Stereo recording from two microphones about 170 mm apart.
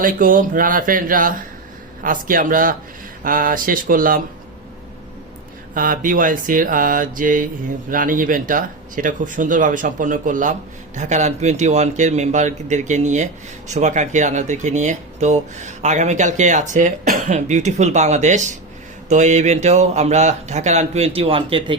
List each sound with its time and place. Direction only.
0.0 s speech: 55° right (ahead or behind)
5.7 s speech: 55° right (ahead or behind); by 21.8 s 30° right (ahead or behind)